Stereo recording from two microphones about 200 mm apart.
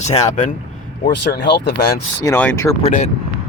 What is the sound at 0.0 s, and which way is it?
Speech, 35° left (ahead or behind).